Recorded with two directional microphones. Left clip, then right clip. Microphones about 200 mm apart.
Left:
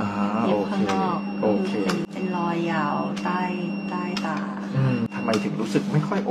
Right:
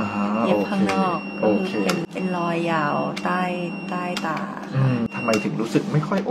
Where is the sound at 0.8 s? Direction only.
45° right (ahead or behind).